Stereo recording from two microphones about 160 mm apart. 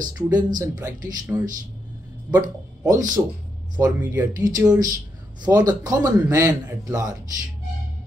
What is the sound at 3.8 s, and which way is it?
A man's voice, 15° right (ahead or behind).